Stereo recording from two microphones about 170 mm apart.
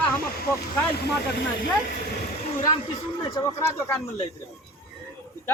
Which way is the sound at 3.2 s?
20° left (ahead or behind).